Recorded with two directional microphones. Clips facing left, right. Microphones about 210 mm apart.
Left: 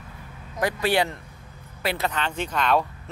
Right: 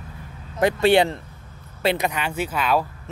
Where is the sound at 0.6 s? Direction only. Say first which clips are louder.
Right 6 dB; 25° right (ahead or behind).